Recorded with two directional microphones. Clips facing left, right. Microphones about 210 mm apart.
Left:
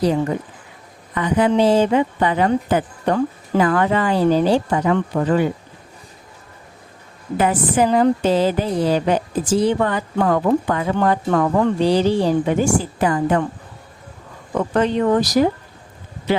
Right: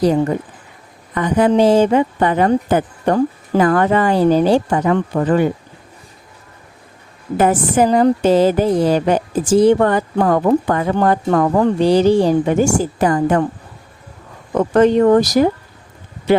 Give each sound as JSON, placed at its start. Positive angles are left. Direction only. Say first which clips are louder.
{"t": 0.0, "sound": "a woman's voice", "louder": "right 4 dB", "side_deg": -45}
{"t": 7.3, "sound": "a woman's voice", "louder": "right 3 dB", "side_deg": -45}
{"t": 14.5, "sound": "a woman's voice", "louder": "right 6 dB", "side_deg": -45}